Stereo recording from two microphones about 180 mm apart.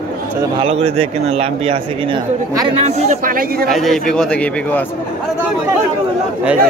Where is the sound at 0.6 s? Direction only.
35° right (ahead or behind); by 3.6 s 50° right (ahead or behind).